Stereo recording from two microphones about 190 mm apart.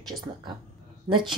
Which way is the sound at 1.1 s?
25° right (ahead or behind).